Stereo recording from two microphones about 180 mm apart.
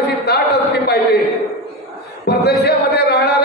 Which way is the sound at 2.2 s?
65° left (ahead or behind).